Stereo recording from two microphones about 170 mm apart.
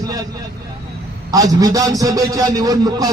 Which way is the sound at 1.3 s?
20° right (ahead or behind).